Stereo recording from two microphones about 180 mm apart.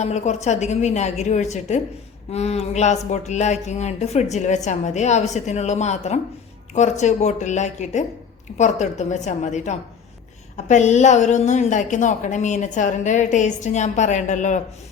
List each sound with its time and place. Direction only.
0.0 s a woman's voice: 40° left (ahead or behind)